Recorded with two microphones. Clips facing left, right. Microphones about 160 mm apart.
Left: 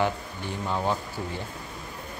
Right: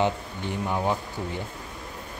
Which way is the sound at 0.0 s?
20° right (ahead or behind).